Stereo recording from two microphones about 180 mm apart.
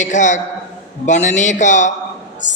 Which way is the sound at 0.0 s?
45° left (ahead or behind).